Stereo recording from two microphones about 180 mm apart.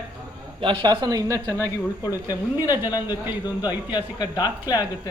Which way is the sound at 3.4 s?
20° left (ahead or behind).